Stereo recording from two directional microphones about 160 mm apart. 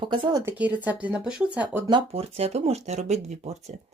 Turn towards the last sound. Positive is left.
turn(degrees=-45)  # may be behind; listen again after turning